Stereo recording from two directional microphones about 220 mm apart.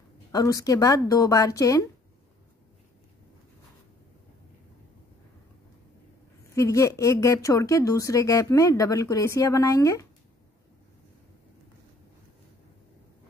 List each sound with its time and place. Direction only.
0.3 s speech: 15° left (ahead or behind)
6.5 s speech: 15° left (ahead or behind)